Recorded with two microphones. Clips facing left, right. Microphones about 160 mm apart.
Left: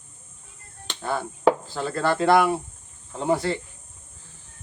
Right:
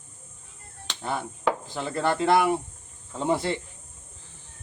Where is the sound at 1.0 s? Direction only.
20° right (ahead or behind).